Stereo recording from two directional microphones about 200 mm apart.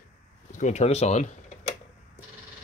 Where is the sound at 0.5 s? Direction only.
35° left (ahead or behind).